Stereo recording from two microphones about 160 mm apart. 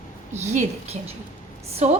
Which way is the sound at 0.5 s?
45° right (ahead or behind).